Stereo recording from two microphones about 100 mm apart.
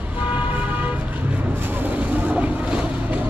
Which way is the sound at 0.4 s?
15° right (ahead or behind).